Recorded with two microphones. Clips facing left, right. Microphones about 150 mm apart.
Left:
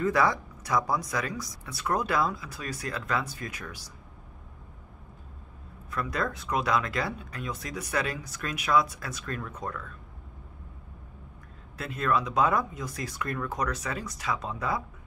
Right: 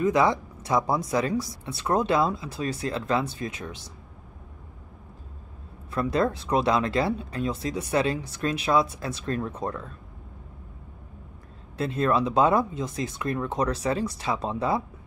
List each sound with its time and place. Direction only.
0.0 s speech: 20° right (ahead or behind)
5.9 s speech: 30° right (ahead or behind)
11.7 s speech: 30° right (ahead or behind)